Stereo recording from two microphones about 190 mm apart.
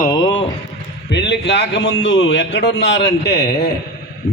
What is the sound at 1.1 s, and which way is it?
A man's voice, 65° left (ahead or behind).